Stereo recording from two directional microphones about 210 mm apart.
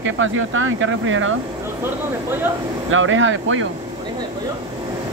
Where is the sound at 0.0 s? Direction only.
70° right (ahead or behind).